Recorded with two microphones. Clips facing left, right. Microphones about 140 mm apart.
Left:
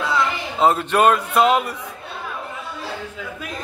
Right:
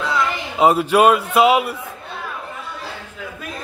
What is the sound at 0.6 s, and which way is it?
Speech, 10° right (ahead or behind).